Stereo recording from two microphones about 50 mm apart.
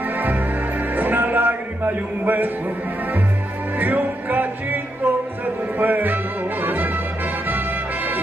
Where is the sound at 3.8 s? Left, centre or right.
Right.